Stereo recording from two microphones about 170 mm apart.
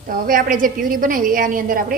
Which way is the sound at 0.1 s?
55° right (ahead or behind).